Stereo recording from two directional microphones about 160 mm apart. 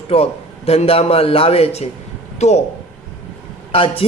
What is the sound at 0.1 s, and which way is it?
A man's voice, 40° left (ahead or behind).